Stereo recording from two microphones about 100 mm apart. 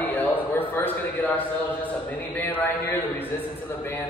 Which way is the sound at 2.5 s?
20° left (ahead or behind).